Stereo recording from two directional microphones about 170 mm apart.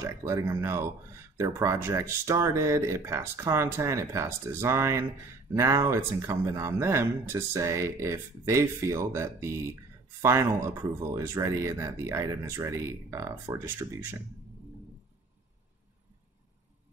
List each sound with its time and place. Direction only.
0.0 s speech: 15° right (ahead or behind)